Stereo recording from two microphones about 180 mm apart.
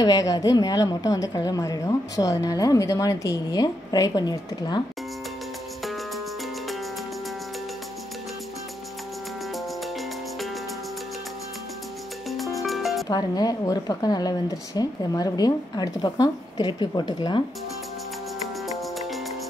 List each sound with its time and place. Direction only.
0.0 s a woman's voice: 20° left (ahead or behind)
12.3 s music: centre (ahead or behind)
13.1 s a woman's voice: 20° left (ahead or behind)